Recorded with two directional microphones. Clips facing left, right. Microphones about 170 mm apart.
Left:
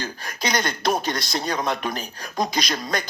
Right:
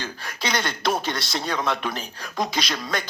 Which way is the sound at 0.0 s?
40° left (ahead or behind).